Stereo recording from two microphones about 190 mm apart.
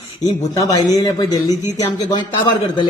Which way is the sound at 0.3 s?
20° left (ahead or behind).